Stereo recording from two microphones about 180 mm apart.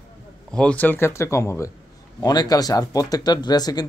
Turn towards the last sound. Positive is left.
turn(degrees=20)  # may be behind; listen again after turning